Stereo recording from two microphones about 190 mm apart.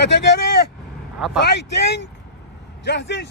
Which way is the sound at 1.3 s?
65° left (ahead or behind).